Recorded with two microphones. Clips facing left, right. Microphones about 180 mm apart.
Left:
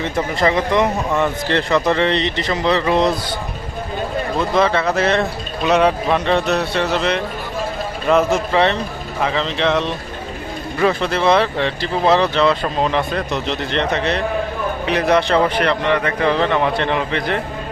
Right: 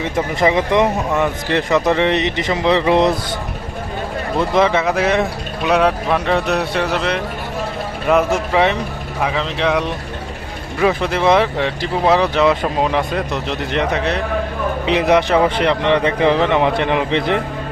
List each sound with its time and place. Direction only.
0.0 s speech: 15° right (ahead or behind)
4.4 s speech: 15° right (ahead or behind)
14.8 s speech: 15° right (ahead or behind)